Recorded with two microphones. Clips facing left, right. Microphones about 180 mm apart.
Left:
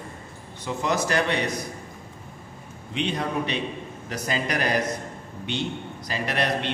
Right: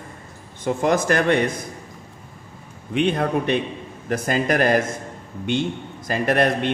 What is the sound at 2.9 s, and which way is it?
A man's voice, 55° right (ahead or behind).